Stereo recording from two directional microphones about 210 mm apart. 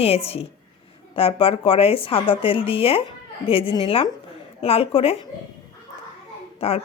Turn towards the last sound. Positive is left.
turn(degrees=30)  # may be behind; listen again after turning